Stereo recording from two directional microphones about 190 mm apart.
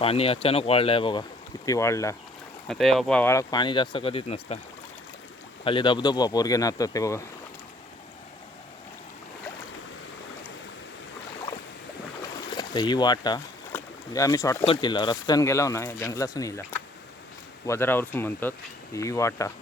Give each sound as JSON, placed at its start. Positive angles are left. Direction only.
{"t": 0.0, "sound": "speech", "side_deg": 30}
{"t": 1.6, "sound": "speech", "side_deg": 15}
{"t": 2.6, "sound": "speech", "side_deg": 0}
{"t": 5.6, "sound": "speech", "side_deg": 25}
{"t": 12.5, "sound": "speech", "side_deg": 20}
{"t": 13.7, "sound": "boat", "side_deg": 15}
{"t": 14.6, "sound": "speech", "side_deg": 25}